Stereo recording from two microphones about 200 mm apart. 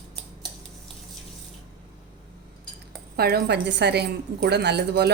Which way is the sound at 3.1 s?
50° right (ahead or behind).